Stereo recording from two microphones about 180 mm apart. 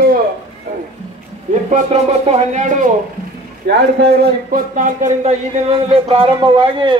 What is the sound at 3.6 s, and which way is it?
A man's voice, 55° right (ahead or behind).